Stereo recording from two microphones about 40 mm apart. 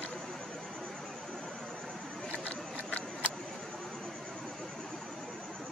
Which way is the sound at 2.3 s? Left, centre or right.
Left.